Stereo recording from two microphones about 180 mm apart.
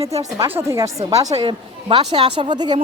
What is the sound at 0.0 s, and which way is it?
Speech, 35° right (ahead or behind).